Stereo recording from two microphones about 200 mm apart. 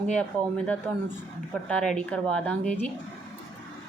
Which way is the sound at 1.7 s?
5° left (ahead or behind).